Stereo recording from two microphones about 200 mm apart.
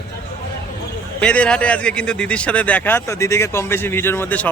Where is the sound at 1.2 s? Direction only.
5° left (ahead or behind).